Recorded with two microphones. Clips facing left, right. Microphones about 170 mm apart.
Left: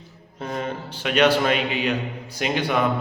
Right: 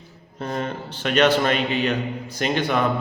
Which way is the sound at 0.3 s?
10° left (ahead or behind).